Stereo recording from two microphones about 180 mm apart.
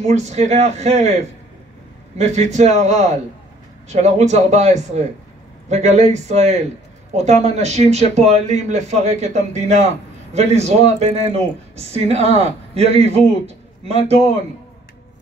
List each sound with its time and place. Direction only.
0.0 s speech: 40° right (ahead or behind)
2.1 s speech: 40° right (ahead or behind)